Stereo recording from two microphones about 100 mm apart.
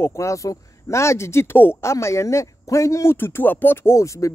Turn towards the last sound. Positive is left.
turn(degrees=30)  # may be behind; listen again after turning